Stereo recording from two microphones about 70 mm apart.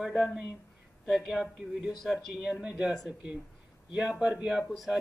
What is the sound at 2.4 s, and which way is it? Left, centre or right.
Speech, centre.